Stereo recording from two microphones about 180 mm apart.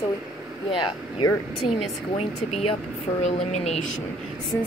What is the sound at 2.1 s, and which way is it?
Speech, 35° left (ahead or behind).